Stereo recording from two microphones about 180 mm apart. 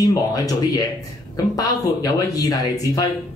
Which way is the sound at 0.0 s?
20° left (ahead or behind).